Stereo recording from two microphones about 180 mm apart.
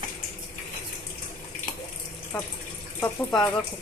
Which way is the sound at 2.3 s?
5° left (ahead or behind).